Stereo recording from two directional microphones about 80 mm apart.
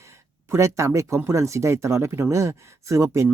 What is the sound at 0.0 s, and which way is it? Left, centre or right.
Speech, right.